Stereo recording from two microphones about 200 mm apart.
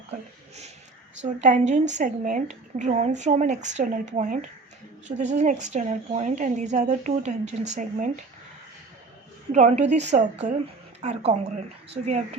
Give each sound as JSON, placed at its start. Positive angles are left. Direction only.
{"t": 1.2, "sound": "a woman's voice", "side_deg": -35}
{"t": 9.5, "sound": "a woman's voice", "side_deg": -35}